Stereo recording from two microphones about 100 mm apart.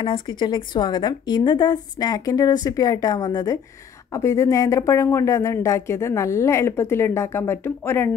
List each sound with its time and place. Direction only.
0.0 s a woman's voice: 55° left (ahead or behind); by 8.1 s 20° left (ahead or behind)